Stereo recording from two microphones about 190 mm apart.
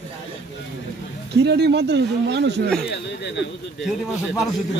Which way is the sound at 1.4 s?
60° right (ahead or behind).